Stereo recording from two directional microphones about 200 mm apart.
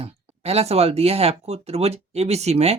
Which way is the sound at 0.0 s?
30° right (ahead or behind).